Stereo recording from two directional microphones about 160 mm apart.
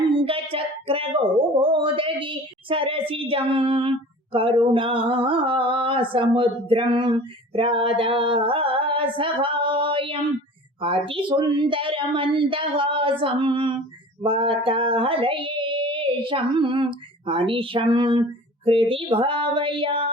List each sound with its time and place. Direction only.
0.1 s a sound: 35° right (ahead or behind)
10.8 s speech: 35° right (ahead or behind)
14.2 s female singing: 35° right (ahead or behind)
17.2 s speech: 30° right (ahead or behind)